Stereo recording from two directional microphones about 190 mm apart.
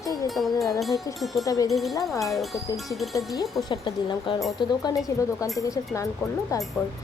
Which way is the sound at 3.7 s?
25° left (ahead or behind).